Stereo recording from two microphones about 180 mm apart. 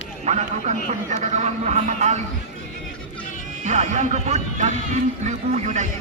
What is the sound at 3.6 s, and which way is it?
Speech, 40° right (ahead or behind).